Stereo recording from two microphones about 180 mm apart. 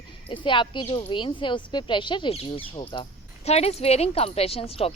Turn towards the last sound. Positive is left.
turn(degrees=35)  # may be behind; listen again after turning